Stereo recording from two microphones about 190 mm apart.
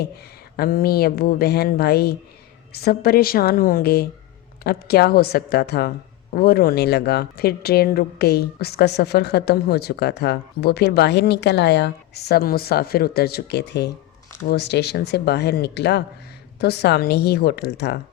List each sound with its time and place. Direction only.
0.5 s speech: 50° left (ahead or behind)